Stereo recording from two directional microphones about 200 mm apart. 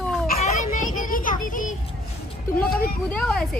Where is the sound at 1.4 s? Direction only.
40° left (ahead or behind).